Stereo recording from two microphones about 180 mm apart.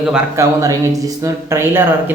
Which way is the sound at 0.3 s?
20° right (ahead or behind).